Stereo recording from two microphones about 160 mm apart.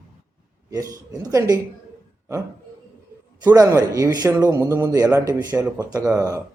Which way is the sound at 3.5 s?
20° right (ahead or behind).